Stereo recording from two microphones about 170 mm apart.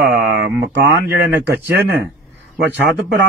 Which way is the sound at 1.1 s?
15° right (ahead or behind).